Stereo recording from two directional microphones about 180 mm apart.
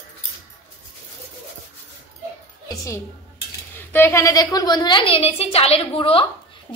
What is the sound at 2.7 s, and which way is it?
A woman's voice, 15° left (ahead or behind).